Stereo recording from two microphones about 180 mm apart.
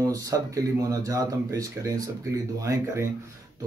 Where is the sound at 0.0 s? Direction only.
20° right (ahead or behind).